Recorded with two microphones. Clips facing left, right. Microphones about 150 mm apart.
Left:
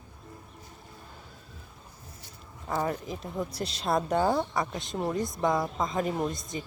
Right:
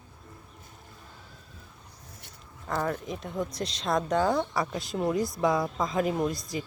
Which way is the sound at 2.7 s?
5° left (ahead or behind).